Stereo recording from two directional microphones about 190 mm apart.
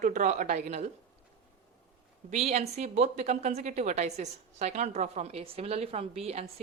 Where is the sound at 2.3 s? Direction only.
35° right (ahead or behind).